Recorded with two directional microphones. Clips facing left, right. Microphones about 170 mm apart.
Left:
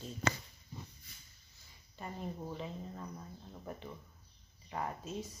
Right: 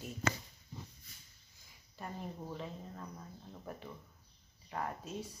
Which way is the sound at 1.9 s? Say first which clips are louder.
Left 1 dB; 5° left (ahead or behind).